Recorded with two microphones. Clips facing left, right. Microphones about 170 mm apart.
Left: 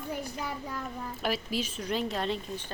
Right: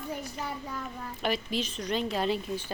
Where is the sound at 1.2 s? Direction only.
5° left (ahead or behind).